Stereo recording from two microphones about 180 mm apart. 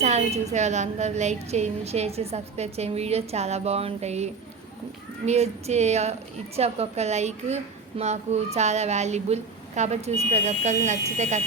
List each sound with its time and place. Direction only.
0.0 s a woman's voice: 40° right (ahead or behind)